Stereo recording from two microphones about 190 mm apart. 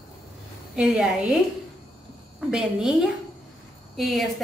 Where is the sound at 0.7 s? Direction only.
5° right (ahead or behind).